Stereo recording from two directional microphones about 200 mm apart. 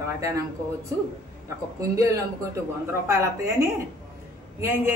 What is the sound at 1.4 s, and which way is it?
A woman's voice, 15° right (ahead or behind).